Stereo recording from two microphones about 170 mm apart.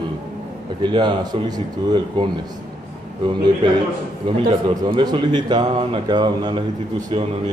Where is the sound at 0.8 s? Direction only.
25° right (ahead or behind).